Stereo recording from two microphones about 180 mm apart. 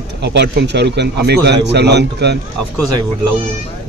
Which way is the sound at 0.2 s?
70° right (ahead or behind).